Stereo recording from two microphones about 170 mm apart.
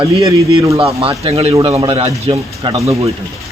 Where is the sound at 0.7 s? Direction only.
30° right (ahead or behind).